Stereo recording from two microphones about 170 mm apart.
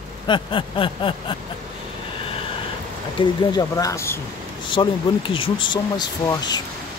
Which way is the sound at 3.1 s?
20° left (ahead or behind).